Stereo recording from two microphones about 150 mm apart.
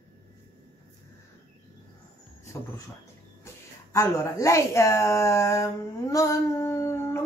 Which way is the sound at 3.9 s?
20° left (ahead or behind).